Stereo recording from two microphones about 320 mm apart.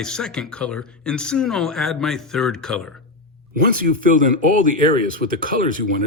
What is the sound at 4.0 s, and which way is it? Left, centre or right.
Speech, right.